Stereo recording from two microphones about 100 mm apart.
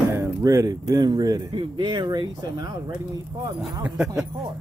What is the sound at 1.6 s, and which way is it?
Speech, 50° right (ahead or behind).